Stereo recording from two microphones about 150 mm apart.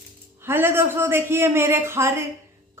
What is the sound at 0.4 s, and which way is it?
A man's voice, 15° right (ahead or behind).